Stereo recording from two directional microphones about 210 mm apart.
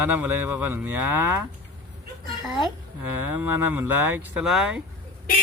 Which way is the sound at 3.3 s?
10° right (ahead or behind).